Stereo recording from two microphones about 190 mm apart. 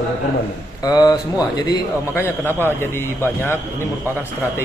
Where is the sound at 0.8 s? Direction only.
20° left (ahead or behind).